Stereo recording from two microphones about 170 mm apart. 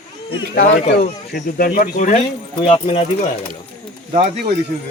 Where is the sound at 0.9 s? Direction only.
55° left (ahead or behind).